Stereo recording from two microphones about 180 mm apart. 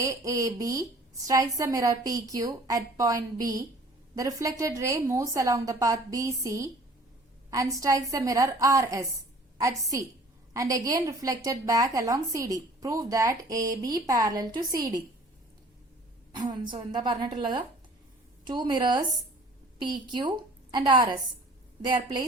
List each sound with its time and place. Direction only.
0.0 s a woman's voice: 15° right (ahead or behind)
10.5 s a woman's voice: 20° right (ahead or behind)
16.3 s a woman's voice: 25° right (ahead or behind)
20.1 s a woman's voice: 25° right (ahead or behind)